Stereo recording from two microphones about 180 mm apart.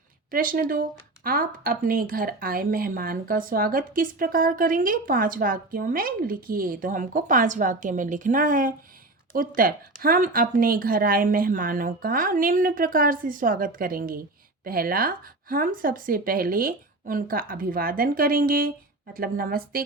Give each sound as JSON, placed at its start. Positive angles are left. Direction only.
{"t": 0.3, "sound": "speech", "side_deg": -50}